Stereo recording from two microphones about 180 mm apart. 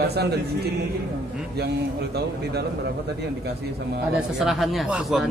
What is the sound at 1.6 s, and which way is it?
A man's voice, 65° right (ahead or behind).